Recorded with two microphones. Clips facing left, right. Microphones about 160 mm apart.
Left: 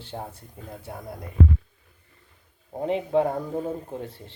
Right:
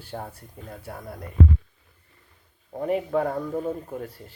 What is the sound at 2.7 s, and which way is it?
Speech, 20° left (ahead or behind).